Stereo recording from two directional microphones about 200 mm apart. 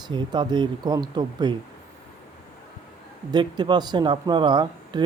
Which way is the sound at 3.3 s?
20° right (ahead or behind).